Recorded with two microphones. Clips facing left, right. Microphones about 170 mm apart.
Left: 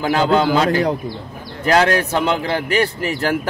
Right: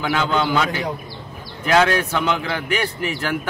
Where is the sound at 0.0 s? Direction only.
40° left (ahead or behind).